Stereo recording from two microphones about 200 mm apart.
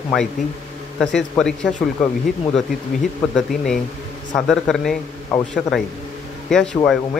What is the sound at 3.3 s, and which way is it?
Speech, centre (ahead or behind).